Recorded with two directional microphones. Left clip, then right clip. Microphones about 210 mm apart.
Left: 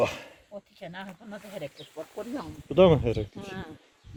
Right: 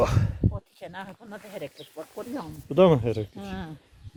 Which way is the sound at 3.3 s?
60° right (ahead or behind).